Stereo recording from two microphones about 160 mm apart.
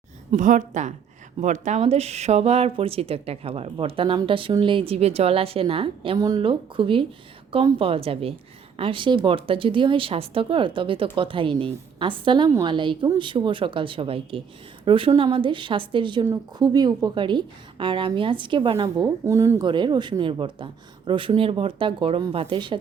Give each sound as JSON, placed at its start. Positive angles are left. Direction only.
{"t": 0.3, "sound": "a woman's voice", "side_deg": -50}
{"t": 19.0, "sound": "a woman's voice", "side_deg": -15}